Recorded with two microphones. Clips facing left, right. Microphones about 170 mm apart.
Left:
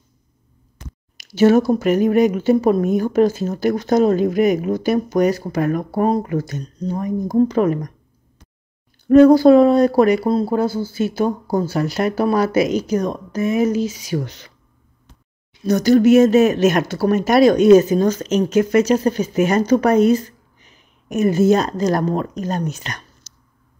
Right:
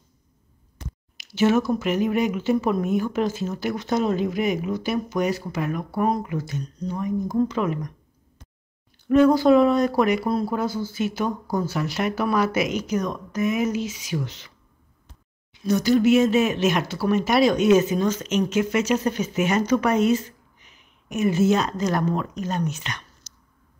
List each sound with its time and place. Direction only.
1.1 s a sound: 40° left (ahead or behind)
1.7 s speech: 40° left (ahead or behind)
9.1 s speech: 35° left (ahead or behind)
15.6 s speech: 40° left (ahead or behind)